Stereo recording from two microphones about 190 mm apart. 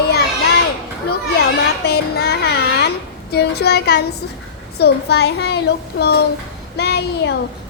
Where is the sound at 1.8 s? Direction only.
55° left (ahead or behind).